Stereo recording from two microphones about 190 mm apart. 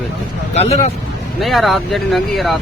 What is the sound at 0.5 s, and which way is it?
Speech, 35° left (ahead or behind).